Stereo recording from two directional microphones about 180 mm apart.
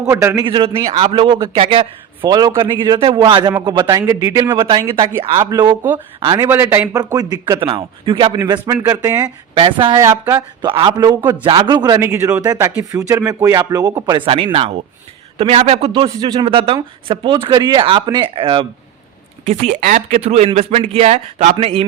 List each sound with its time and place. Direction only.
0.0 s a man's voice: 15° right (ahead or behind)
0.4 s a man's voice: 30° right (ahead or behind)
4.5 s a man's voice: 25° right (ahead or behind)
6.5 s a man's voice: 15° right (ahead or behind)
8.5 s a man's voice: 15° right (ahead or behind); by 15.9 s 35° right (ahead or behind)
15.9 s a man's voice: 25° right (ahead or behind)
19.5 s speech: 40° right (ahead or behind)